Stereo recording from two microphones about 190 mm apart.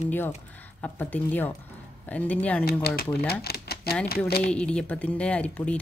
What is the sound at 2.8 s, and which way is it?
Speech, 55° left (ahead or behind).